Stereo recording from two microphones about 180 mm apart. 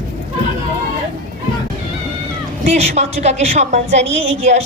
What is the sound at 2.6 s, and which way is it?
A woman's voice, 40° right (ahead or behind).